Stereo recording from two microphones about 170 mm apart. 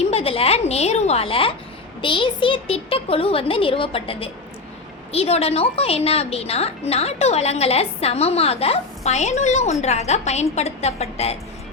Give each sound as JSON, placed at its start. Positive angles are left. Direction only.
{"t": 0.0, "sound": "a woman's voice", "side_deg": 35}